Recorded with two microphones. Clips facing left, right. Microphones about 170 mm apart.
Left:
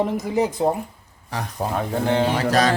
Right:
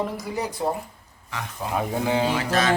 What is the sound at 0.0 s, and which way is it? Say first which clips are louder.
Speech: left 7 dB; 20° left (ahead or behind).